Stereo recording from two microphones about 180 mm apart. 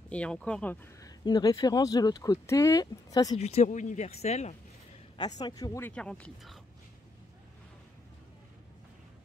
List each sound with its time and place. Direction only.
0.1 s speech: 5° left (ahead or behind)
1.0 s speech: 20° left (ahead or behind)
3.3 s speech: 40° left (ahead or behind)
5.1 s speech: 20° left (ahead or behind); by 6.6 s 5° left (ahead or behind)